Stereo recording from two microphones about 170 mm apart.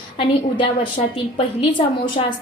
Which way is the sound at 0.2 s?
30° left (ahead or behind).